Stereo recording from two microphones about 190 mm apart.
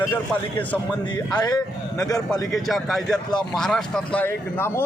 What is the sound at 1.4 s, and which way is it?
Speech, 20° left (ahead or behind).